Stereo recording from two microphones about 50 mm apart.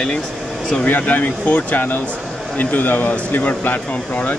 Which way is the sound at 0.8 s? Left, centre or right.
Left.